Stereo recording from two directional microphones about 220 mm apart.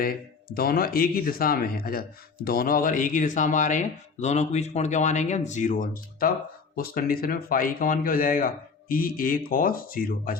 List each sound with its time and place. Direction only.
0.0 s speech: 40° left (ahead or behind)